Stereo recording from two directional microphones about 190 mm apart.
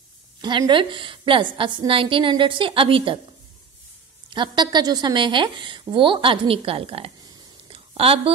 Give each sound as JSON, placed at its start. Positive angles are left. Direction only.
{"t": 0.4, "sound": "a woman's voice", "side_deg": -25}
{"t": 4.3, "sound": "a woman's voice", "side_deg": -25}